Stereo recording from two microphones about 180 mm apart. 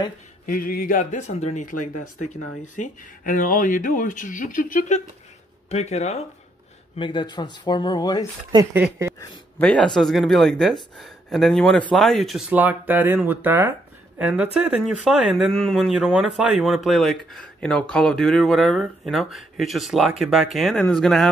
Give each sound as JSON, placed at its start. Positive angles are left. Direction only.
{"t": 0.5, "sound": "speech", "side_deg": 50}
{"t": 7.0, "sound": "speech", "side_deg": 25}
{"t": 8.7, "sound": "speech", "side_deg": -10}
{"t": 9.6, "sound": "speech", "side_deg": 5}